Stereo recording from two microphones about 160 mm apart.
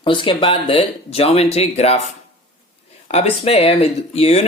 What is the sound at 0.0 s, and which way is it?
Speech, 30° left (ahead or behind).